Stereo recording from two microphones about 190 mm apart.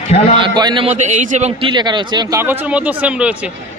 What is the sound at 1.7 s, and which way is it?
Speech, 25° right (ahead or behind).